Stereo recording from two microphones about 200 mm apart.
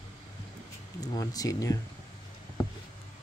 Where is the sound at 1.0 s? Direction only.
20° left (ahead or behind).